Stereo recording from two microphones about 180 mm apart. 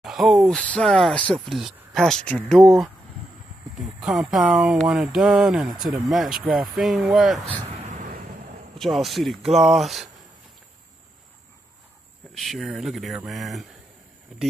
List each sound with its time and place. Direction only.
0.0 s speech: centre (ahead or behind)
7.7 s a sound: 40° right (ahead or behind)
8.7 s speech: centre (ahead or behind)
12.4 s speech: centre (ahead or behind)